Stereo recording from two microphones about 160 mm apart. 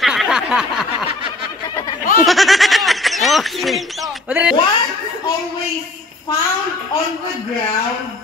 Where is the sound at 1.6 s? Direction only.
20° left (ahead or behind).